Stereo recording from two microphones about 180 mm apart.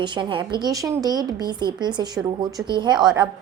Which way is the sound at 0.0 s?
25° right (ahead or behind).